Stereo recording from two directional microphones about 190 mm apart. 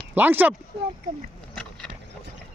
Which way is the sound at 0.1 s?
10° right (ahead or behind).